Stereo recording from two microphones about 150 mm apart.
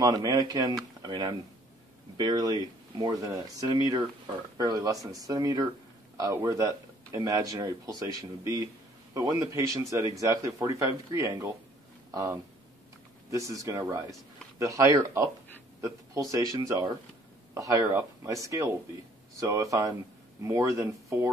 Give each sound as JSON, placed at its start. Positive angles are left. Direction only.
{"t": 0.0, "sound": "speech", "side_deg": -25}